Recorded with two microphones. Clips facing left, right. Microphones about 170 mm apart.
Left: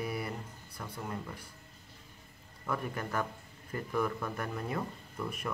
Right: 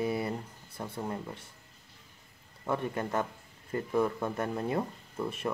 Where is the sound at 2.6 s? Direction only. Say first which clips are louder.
Right 4 dB; 25° right (ahead or behind).